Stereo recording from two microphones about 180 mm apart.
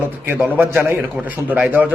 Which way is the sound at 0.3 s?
10° right (ahead or behind).